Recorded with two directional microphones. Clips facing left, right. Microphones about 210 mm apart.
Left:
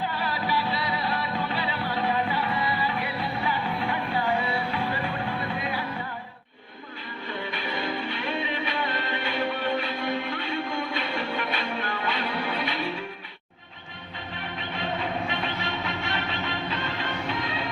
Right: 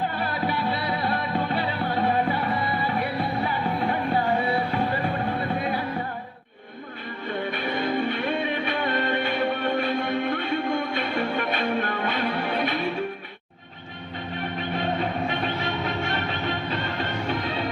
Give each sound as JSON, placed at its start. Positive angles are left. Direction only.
{"t": 0.1, "sound": "music", "side_deg": -50}
{"t": 7.6, "sound": "music", "side_deg": -50}
{"t": 15.3, "sound": "train", "side_deg": -45}
{"t": 16.6, "sound": "music", "side_deg": -45}